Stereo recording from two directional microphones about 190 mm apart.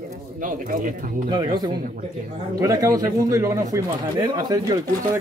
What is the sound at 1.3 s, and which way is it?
Speech, 20° right (ahead or behind).